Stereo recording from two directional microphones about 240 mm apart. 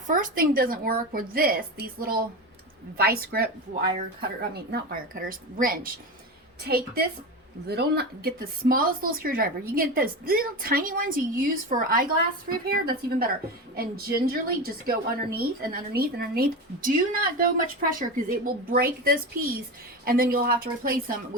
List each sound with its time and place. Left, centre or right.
0.1 s speech: right